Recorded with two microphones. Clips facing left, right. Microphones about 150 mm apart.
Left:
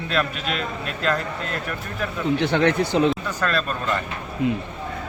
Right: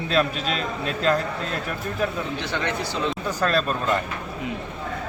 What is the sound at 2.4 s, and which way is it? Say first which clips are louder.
Speech: left 10 dB; 55° left (ahead or behind).